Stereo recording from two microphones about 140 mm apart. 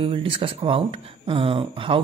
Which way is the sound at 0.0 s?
40° right (ahead or behind).